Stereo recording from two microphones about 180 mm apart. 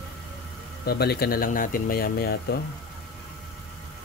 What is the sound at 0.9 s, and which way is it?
Speech, 60° left (ahead or behind).